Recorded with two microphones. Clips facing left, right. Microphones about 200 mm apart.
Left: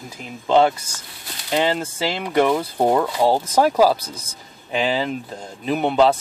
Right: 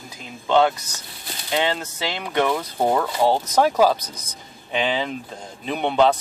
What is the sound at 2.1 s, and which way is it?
Speech, 5° left (ahead or behind).